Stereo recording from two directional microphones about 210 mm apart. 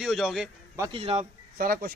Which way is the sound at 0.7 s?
15° right (ahead or behind).